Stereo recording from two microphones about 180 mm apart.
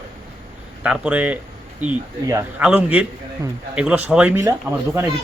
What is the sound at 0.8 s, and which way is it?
A man's voice, 5° right (ahead or behind).